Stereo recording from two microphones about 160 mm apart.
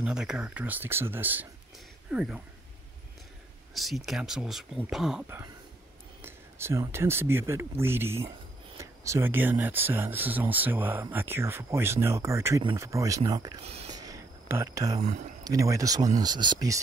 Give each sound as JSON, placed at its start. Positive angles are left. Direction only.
{"t": 0.0, "sound": "speech", "side_deg": -5}
{"t": 3.7, "sound": "speech", "side_deg": 0}
{"t": 6.2, "sound": "speech", "side_deg": -15}
{"t": 13.7, "sound": "speech", "side_deg": -40}
{"t": 13.9, "sound": "a sound", "side_deg": -20}
{"t": 15.0, "sound": "speech", "side_deg": -45}
{"t": 15.4, "sound": "speech", "side_deg": -20}